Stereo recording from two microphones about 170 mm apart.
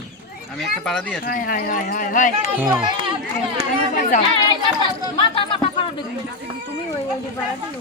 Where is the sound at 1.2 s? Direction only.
55° left (ahead or behind).